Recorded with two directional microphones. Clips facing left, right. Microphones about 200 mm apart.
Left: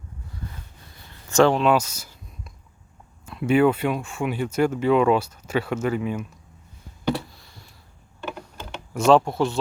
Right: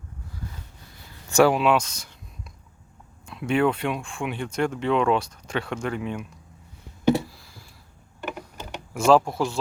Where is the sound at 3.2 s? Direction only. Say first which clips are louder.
Left 4 dB; 5° left (ahead or behind).